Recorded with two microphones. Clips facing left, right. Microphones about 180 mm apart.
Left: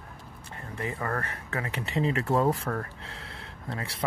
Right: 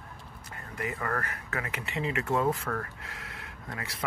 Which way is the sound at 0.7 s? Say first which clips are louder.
Left 1 dB; 30° left (ahead or behind).